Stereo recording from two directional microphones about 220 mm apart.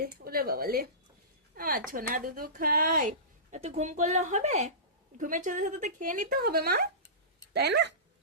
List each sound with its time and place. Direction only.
0.0 s speech: 45° right (ahead or behind)